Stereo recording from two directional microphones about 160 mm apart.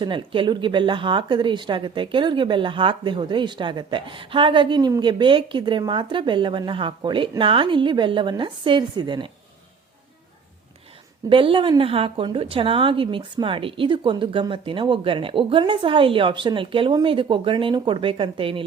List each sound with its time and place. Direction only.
0.0 s speech: 30° right (ahead or behind)
11.3 s a woman's voice: 35° right (ahead or behind)